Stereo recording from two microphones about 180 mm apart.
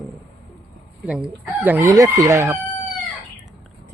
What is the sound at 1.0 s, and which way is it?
Chicken, 5° right (ahead or behind).